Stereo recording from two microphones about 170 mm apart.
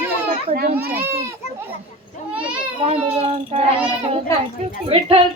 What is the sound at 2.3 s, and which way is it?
Children playing, 5° right (ahead or behind).